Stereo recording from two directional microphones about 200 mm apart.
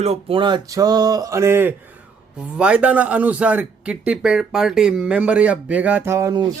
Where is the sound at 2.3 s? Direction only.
5° right (ahead or behind).